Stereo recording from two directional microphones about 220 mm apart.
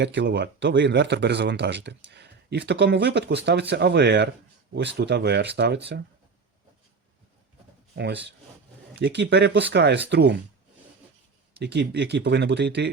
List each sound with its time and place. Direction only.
0.0 s speech: 50° right (ahead or behind)
7.9 s speech: 50° right (ahead or behind)
11.6 s speech: 50° right (ahead or behind)